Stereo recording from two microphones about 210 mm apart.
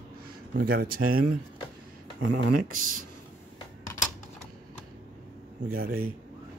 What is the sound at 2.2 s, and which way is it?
Speech, 90° right.